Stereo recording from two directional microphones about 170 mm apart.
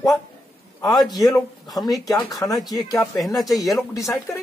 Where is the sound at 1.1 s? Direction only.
20° left (ahead or behind).